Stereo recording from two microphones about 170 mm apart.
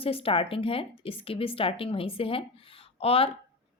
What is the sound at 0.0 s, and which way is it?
Speech, 35° left (ahead or behind).